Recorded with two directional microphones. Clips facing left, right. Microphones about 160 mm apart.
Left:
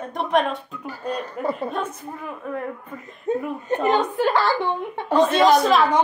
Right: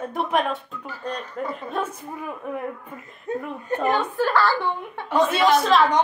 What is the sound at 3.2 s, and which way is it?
Speech, 20° left (ahead or behind).